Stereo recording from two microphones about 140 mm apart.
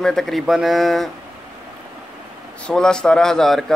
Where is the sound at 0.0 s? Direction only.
5° left (ahead or behind).